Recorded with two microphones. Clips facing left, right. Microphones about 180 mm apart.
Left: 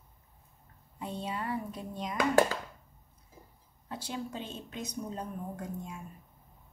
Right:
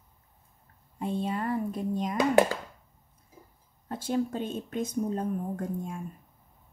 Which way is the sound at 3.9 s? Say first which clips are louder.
Right 9 dB; 50° right (ahead or behind).